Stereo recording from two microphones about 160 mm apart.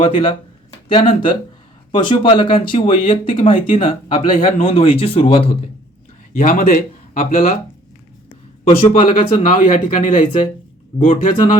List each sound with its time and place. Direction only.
0.0 s speech: 35° left (ahead or behind)
6.3 s speech: 55° left (ahead or behind)
9.0 s speech: 50° left (ahead or behind)